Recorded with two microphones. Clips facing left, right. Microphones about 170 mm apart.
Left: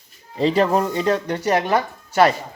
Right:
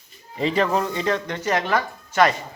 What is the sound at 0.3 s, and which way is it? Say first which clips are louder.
A woman's voice: left 4 dB; 35° left (ahead or behind).